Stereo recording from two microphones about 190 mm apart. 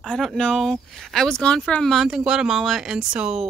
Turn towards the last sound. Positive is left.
turn(degrees=-5)  # may be behind; listen again after turning